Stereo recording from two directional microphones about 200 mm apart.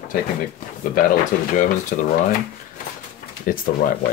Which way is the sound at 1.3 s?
45° left (ahead or behind).